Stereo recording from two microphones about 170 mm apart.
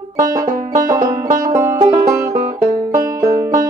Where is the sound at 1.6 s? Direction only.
20° right (ahead or behind).